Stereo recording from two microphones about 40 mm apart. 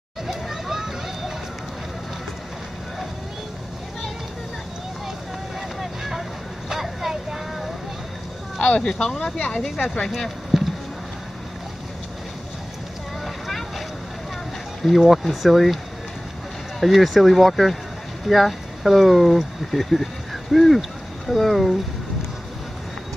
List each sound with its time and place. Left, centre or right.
0.3 s a sound: centre
5.8 s boat: centre
6.7 s vehicle: centre
8.5 s a sound: left
8.9 s speech: centre
10.5 s a sound: centre
13.2 s boat: centre
14.8 s speech: centre
16.8 s speech: centre